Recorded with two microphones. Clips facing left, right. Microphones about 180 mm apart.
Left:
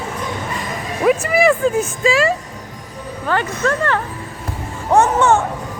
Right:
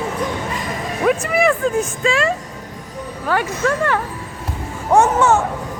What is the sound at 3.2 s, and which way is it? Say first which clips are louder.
Speech: even; 10° right (ahead or behind).